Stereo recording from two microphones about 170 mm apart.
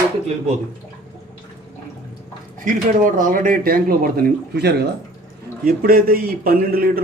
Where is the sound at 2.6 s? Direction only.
50° right (ahead or behind); by 4.8 s 75° right (ahead or behind).